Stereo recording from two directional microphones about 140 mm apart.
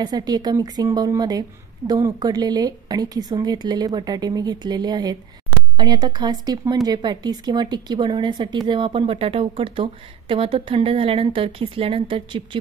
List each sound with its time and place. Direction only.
0.0 s speech: 30° right (ahead or behind)